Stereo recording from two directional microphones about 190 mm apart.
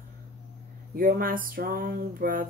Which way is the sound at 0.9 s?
50° right (ahead or behind).